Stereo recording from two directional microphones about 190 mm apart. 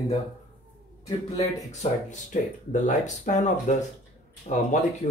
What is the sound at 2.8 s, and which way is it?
Speech, 40° left (ahead or behind).